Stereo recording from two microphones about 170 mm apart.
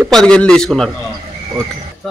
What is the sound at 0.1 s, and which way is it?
Speech, 5° left (ahead or behind).